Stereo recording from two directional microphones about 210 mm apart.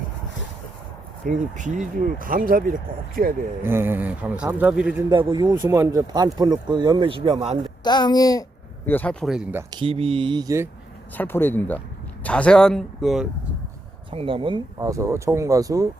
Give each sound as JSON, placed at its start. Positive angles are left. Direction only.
{"t": 1.3, "sound": "speech", "side_deg": -40}
{"t": 3.6, "sound": "speech", "side_deg": -10}
{"t": 5.0, "sound": "speech", "side_deg": -20}
{"t": 7.9, "sound": "a child's voice", "side_deg": 20}
{"t": 8.9, "sound": "speech", "side_deg": 5}
{"t": 11.2, "sound": "speech", "side_deg": 10}
{"t": 14.1, "sound": "speech", "side_deg": -25}